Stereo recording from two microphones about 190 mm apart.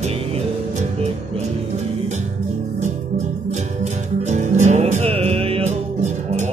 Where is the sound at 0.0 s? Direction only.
35° right (ahead or behind).